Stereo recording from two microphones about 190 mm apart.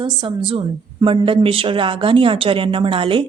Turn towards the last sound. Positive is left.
turn(degrees=-30)  # may be behind; listen again after turning